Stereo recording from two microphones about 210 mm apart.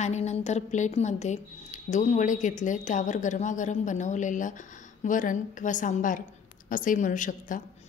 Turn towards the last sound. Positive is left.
turn(degrees=40)  # may be behind; listen again after turning